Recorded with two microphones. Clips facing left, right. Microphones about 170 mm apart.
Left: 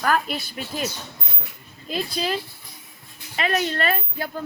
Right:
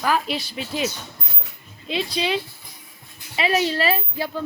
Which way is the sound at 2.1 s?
Centre (ahead or behind).